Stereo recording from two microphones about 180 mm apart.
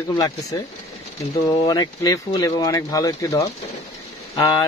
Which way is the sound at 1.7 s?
20° left (ahead or behind).